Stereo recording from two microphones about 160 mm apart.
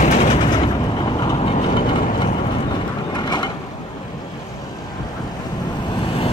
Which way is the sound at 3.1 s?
25° left (ahead or behind).